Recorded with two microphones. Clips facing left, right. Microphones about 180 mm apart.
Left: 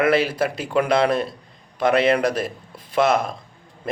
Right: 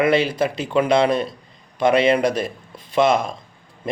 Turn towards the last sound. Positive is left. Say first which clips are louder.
# right 1 dB
turn(degrees=5)  # may be behind; listen again after turning